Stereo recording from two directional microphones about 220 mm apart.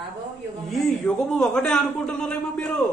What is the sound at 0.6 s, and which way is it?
A man's voice, centre (ahead or behind).